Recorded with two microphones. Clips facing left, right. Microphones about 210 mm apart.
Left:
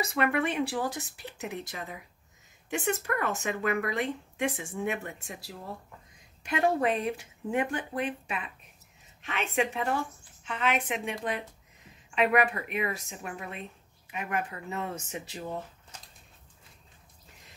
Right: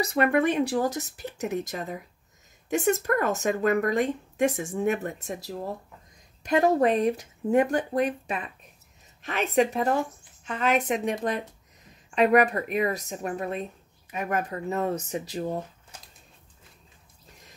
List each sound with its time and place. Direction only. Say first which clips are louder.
0.0 s speech: right 5 dB; 40° right (ahead or behind)
12.2 s speech: right 5 dB; 40° right (ahead or behind)